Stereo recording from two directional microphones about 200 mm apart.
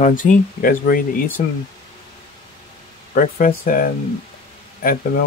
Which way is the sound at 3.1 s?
45° left (ahead or behind).